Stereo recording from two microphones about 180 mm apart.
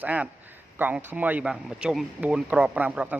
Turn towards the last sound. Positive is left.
turn(degrees=-10)  # may be behind; listen again after turning